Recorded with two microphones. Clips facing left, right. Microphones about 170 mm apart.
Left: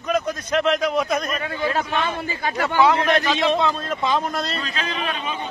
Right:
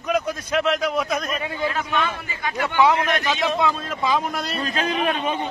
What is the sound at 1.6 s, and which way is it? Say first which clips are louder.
A man's voice: left 2 dB; 35° left (ahead or behind).